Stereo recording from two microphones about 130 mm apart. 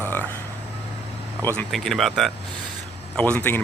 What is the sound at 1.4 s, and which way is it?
Speech, 15° left (ahead or behind).